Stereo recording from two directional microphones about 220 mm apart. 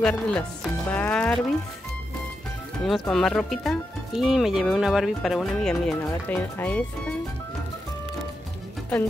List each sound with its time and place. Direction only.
0.0 s speech: 5° left (ahead or behind)
2.8 s speech: centre (ahead or behind)